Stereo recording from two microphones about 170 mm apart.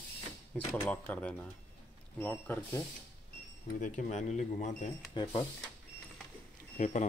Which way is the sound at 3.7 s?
45° left (ahead or behind).